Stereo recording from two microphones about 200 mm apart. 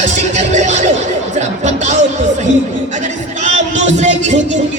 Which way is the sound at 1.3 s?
35° right (ahead or behind).